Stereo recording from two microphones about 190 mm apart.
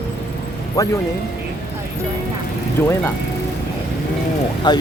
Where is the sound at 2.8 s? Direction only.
10° left (ahead or behind).